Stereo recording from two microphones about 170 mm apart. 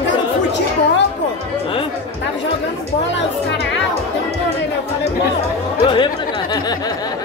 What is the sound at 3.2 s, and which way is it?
Music, 90° left.